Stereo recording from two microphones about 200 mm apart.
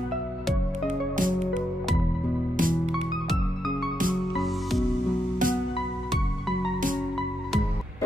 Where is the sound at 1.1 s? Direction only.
40° right (ahead or behind).